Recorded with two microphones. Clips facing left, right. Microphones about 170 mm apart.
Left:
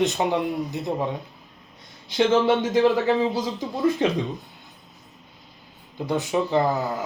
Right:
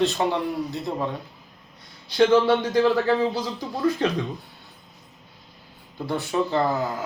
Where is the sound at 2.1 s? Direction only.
20° left (ahead or behind).